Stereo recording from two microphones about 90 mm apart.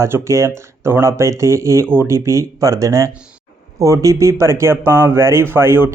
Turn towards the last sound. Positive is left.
turn(degrees=-30)  # may be behind; listen again after turning